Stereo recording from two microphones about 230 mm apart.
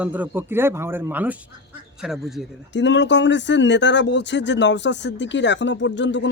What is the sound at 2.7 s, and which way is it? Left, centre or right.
Speech, left.